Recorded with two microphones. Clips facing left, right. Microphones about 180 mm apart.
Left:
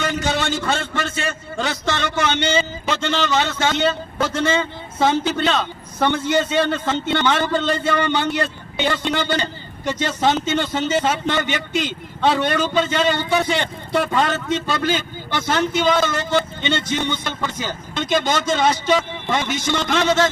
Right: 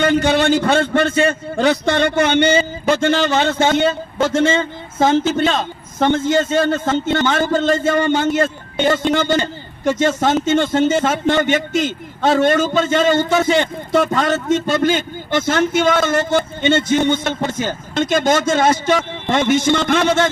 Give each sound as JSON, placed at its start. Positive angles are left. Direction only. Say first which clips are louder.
{"t": 0.0, "sound": "a man's voice", "louder": "right 8 dB", "side_deg": -60}